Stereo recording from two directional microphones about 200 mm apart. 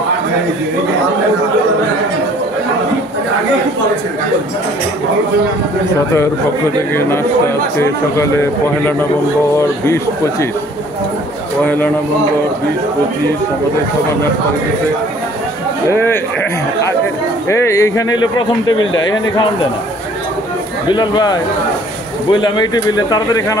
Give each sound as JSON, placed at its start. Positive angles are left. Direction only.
{"t": 6.9, "sound": "a man's voice", "side_deg": 10}
{"t": 15.9, "sound": "a man's voice", "side_deg": 10}
{"t": 17.5, "sound": "a man's voice", "side_deg": 15}
{"t": 18.7, "sound": "a man's voice", "side_deg": 80}
{"t": 20.9, "sound": "speech", "side_deg": 20}